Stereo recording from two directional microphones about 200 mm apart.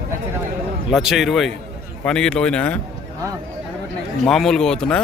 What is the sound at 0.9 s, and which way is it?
A man's voice, centre (ahead or behind).